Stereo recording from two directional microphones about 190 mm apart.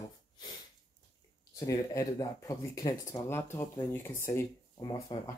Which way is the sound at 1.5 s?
15° left (ahead or behind).